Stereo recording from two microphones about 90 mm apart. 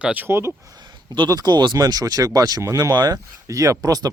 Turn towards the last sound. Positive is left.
turn(degrees=-45)  # may be behind; listen again after turning